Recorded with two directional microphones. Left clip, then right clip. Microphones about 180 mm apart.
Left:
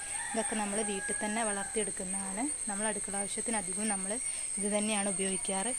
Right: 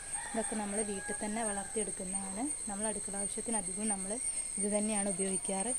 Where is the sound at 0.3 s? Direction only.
15° left (ahead or behind).